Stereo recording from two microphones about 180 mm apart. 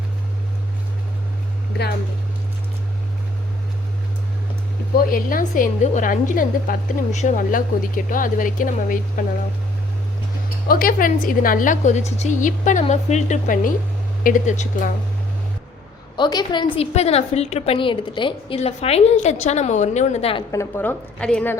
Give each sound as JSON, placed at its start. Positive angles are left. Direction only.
{"t": 5.0, "sound": "a woman's voice", "side_deg": 50}
{"t": 10.7, "sound": "a woman's voice", "side_deg": 50}
{"t": 16.1, "sound": "a woman's voice", "side_deg": 25}
{"t": 20.5, "sound": "a woman's voice", "side_deg": 15}